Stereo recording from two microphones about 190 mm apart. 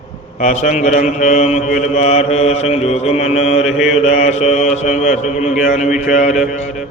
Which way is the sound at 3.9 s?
35° left (ahead or behind).